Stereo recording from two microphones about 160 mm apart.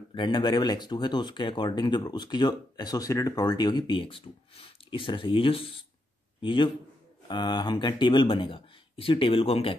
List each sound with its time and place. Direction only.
0.1 s speech: 30° left (ahead or behind)